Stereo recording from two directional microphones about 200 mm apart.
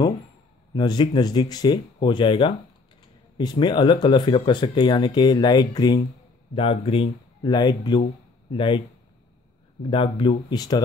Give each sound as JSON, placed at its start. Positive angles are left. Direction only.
{"t": 0.7, "sound": "speech", "side_deg": 20}